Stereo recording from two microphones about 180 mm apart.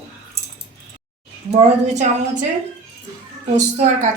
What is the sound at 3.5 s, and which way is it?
Speech, 45° right (ahead or behind).